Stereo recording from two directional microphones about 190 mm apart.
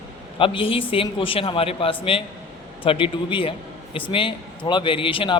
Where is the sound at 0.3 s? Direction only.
30° left (ahead or behind).